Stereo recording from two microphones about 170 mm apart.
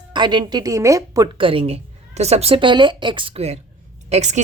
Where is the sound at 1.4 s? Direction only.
30° right (ahead or behind).